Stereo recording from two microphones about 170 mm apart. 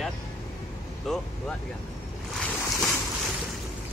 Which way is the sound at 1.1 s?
Centre (ahead or behind).